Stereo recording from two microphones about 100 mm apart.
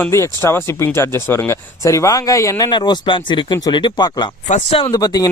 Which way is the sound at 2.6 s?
50° left (ahead or behind).